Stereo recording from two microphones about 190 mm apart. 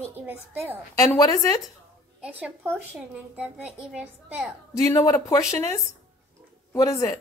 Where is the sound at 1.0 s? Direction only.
20° left (ahead or behind).